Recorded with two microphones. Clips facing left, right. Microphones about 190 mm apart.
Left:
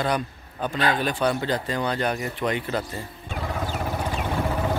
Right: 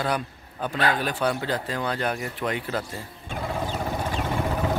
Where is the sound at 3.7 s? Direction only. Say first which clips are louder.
Even; 10° left (ahead or behind).